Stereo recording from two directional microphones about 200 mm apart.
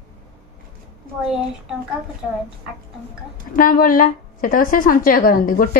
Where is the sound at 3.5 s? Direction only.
45° left (ahead or behind).